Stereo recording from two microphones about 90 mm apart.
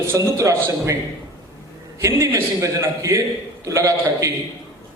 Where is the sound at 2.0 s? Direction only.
35° right (ahead or behind).